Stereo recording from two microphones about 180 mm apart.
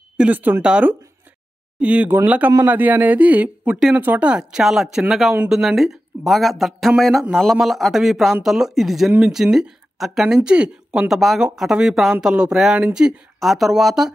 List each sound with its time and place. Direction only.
0.2 s speech: 10° right (ahead or behind)